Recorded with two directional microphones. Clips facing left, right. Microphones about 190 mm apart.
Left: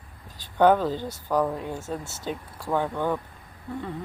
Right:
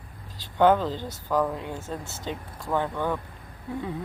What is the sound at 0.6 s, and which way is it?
Speech, 10° left (ahead or behind).